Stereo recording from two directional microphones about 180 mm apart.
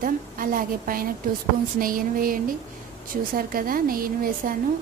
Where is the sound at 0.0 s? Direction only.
50° right (ahead or behind).